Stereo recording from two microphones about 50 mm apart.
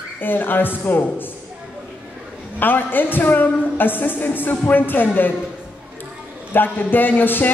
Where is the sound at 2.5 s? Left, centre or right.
Left.